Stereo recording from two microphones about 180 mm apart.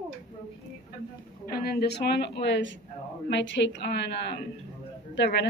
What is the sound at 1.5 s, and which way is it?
A woman's voice, 60° left (ahead or behind).